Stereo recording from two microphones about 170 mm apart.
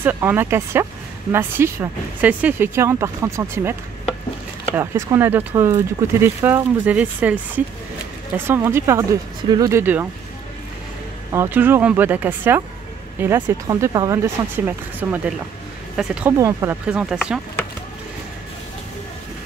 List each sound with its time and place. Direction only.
0.0 s speech: 10° right (ahead or behind)
4.7 s speech: 15° right (ahead or behind)
11.3 s speech: 10° right (ahead or behind)
16.3 s speech: 20° right (ahead or behind)
16.8 s speech: 5° right (ahead or behind)